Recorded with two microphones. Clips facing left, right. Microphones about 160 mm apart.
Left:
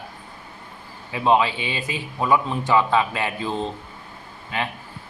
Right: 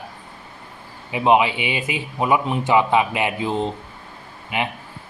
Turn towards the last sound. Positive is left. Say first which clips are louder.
# right 3 dB
turn(degrees=-15)  # may be behind; listen again after turning